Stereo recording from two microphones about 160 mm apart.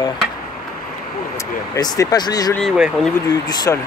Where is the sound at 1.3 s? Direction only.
20° left (ahead or behind).